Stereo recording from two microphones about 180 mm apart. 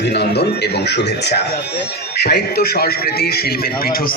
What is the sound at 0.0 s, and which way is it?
Speech, 70° left (ahead or behind).